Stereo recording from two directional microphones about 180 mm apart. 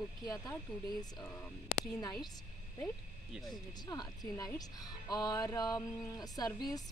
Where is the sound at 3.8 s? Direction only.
25° left (ahead or behind).